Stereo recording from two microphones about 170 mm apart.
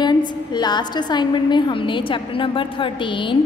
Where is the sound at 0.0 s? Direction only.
25° left (ahead or behind).